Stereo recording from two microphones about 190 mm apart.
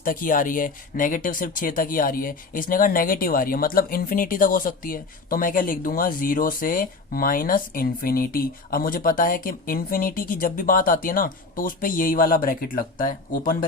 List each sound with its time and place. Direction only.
0.0 s speech: 45° left (ahead or behind)